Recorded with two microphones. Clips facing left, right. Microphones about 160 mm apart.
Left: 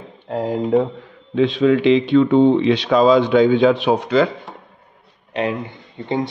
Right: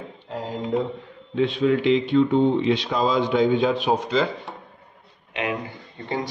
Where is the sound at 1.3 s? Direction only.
90° left; by 4.3 s 65° left (ahead or behind).